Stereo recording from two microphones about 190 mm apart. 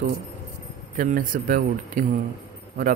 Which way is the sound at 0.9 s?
45° right (ahead or behind).